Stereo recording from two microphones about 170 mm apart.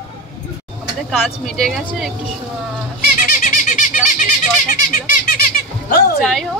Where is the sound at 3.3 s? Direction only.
50° left (ahead or behind).